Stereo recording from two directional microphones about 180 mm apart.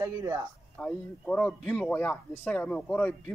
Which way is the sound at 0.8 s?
5° left (ahead or behind).